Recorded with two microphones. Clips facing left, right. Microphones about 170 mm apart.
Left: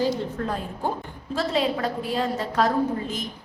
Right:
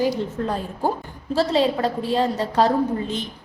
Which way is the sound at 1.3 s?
30° right (ahead or behind).